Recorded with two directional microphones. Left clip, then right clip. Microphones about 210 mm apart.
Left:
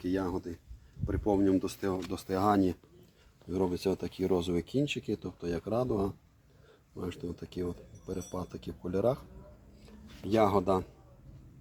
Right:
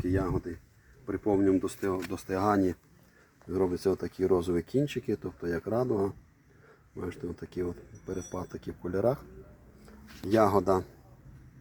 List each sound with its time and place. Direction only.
0.1 s speech: 20° right (ahead or behind)
10.2 s speech: 30° right (ahead or behind)